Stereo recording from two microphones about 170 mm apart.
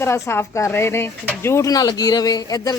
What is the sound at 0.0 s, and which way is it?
A woman's voice, 15° left (ahead or behind).